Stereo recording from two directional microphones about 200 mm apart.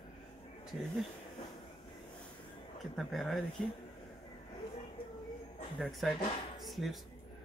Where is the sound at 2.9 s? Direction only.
Centre (ahead or behind).